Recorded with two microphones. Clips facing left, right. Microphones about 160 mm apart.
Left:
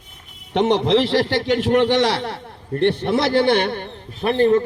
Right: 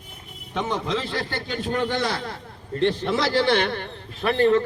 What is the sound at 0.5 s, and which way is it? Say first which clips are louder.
A man's voice: left 10 dB; 75° left (ahead or behind).